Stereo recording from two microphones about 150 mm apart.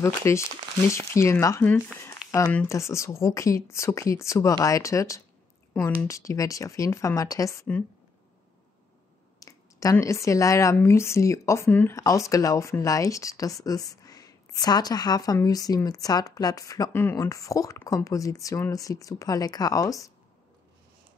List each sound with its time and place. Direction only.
0.0 s speech: 20° left (ahead or behind)
9.4 s a sound: 20° left (ahead or behind)
10.2 s speech: 20° left (ahead or behind)